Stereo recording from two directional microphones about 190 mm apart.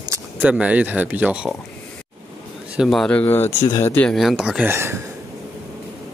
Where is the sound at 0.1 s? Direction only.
10° right (ahead or behind).